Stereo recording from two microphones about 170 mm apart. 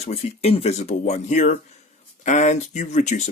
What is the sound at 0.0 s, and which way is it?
Speech, 40° left (ahead or behind).